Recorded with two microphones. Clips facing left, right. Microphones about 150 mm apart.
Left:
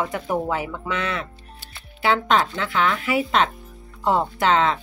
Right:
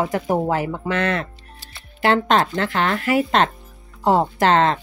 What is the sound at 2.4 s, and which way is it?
Speech, 50° right (ahead or behind).